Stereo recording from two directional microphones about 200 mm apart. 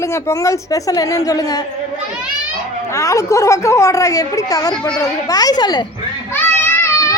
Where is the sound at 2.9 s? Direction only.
15° left (ahead or behind).